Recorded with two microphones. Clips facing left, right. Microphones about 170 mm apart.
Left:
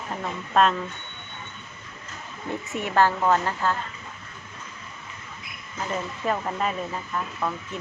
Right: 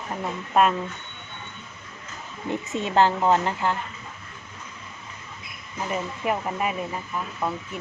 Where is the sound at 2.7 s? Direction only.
20° right (ahead or behind).